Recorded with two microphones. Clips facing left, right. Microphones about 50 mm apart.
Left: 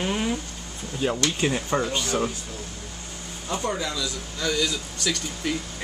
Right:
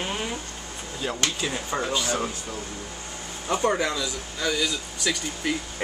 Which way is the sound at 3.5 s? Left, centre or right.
Right.